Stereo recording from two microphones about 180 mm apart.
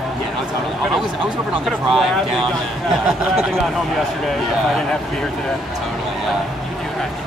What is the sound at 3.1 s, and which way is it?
Speech, centre (ahead or behind).